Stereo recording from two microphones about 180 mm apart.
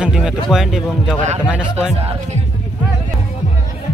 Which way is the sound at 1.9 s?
35° right (ahead or behind).